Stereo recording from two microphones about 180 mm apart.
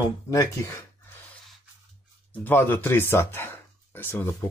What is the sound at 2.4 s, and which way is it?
Speech, 10° left (ahead or behind).